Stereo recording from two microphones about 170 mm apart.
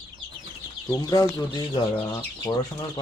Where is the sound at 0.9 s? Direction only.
20° left (ahead or behind).